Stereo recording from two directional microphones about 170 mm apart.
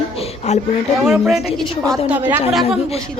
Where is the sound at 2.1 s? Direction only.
10° right (ahead or behind).